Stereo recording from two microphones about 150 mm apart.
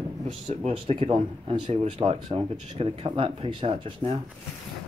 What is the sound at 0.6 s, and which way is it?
Speech, 40° right (ahead or behind).